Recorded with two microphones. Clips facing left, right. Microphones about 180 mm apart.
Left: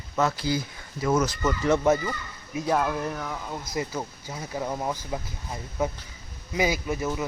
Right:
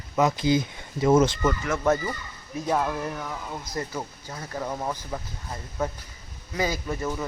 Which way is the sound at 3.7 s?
10° left (ahead or behind).